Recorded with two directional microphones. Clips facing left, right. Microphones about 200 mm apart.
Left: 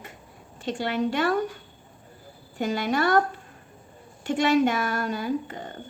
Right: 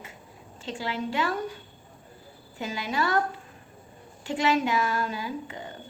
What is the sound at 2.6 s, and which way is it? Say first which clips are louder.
Speech: left 5 dB; 55° left (ahead or behind).